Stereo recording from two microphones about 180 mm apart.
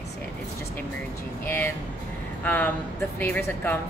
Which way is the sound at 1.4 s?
10° left (ahead or behind).